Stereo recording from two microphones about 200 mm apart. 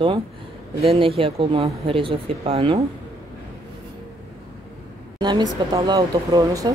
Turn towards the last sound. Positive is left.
turn(degrees=-20)  # may be behind; listen again after turning